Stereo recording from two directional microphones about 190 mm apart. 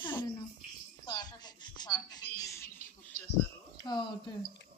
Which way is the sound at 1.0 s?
20° left (ahead or behind).